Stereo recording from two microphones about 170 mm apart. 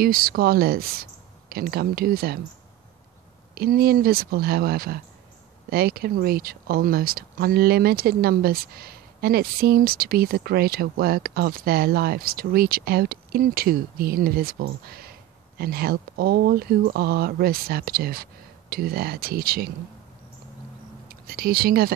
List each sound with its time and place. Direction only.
0.0 s speech: 60° right (ahead or behind)
3.5 s speech: 65° right (ahead or behind)
21.1 s speech: 60° right (ahead or behind)